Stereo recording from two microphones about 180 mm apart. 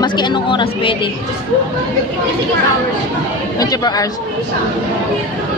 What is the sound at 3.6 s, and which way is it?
Speech, 20° left (ahead or behind).